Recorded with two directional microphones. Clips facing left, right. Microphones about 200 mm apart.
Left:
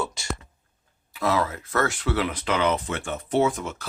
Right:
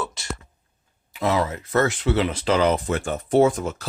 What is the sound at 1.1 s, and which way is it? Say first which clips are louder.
Speech: right 2 dB; 20° right (ahead or behind).